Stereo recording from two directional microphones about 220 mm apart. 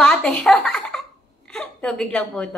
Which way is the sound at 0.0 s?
5° left (ahead or behind).